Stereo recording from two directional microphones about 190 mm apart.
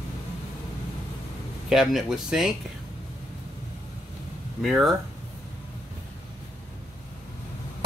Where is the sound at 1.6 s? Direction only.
Centre (ahead or behind).